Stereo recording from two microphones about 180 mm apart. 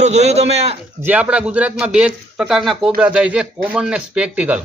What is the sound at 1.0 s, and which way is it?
A man's voice, 10° right (ahead or behind).